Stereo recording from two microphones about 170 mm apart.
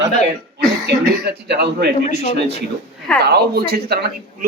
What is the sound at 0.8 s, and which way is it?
Speech, 80° right.